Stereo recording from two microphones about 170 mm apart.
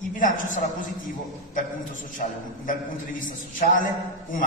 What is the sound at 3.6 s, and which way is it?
Speech, 55° left (ahead or behind).